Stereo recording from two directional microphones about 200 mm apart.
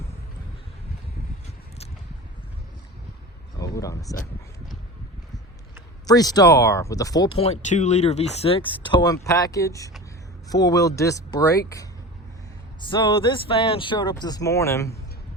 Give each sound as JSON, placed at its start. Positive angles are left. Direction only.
{"t": 3.6, "sound": "speech", "side_deg": 15}
{"t": 6.1, "sound": "speech", "side_deg": 20}
{"t": 12.9, "sound": "speech", "side_deg": 25}